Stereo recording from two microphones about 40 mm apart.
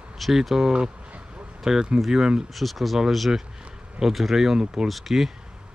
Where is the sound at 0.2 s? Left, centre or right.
Centre.